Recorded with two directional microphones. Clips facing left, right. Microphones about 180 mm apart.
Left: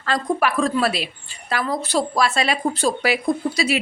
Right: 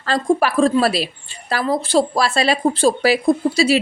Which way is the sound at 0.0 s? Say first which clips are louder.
Right 4 dB; 35° right (ahead or behind).